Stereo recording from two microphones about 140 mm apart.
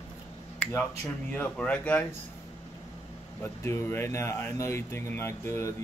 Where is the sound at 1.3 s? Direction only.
10° left (ahead or behind).